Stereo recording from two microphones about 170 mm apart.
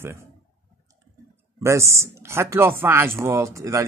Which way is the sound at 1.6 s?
15° right (ahead or behind).